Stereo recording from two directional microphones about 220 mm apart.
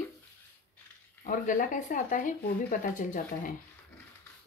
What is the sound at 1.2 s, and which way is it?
Speech, 35° left (ahead or behind).